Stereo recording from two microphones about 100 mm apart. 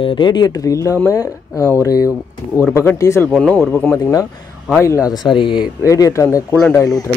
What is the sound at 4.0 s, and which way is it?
Speech, 35° left (ahead or behind).